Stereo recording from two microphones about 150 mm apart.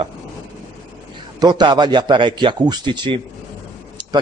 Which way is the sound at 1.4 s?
30° right (ahead or behind).